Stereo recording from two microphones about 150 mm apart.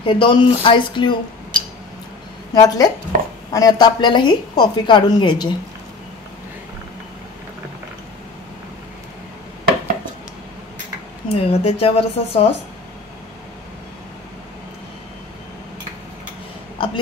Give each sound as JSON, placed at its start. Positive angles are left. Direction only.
{"t": 0.0, "sound": "a woman's voice", "side_deg": 35}
{"t": 2.5, "sound": "a woman's voice", "side_deg": 25}
{"t": 11.2, "sound": "a woman's voice", "side_deg": 40}
{"t": 16.7, "sound": "a sound", "side_deg": 35}